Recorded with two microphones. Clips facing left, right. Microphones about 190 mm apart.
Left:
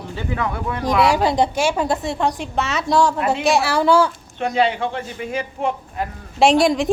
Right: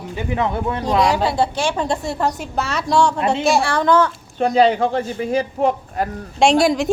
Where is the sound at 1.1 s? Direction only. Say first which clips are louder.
Left 1 dB; 20° left (ahead or behind).